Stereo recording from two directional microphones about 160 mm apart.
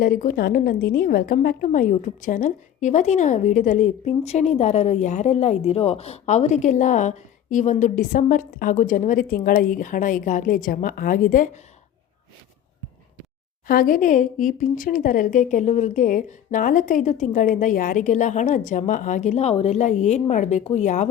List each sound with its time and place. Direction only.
0.0 s a woman's voice: 60° left (ahead or behind)
13.7 s a woman's voice: 65° left (ahead or behind); by 21.1 s 45° left (ahead or behind)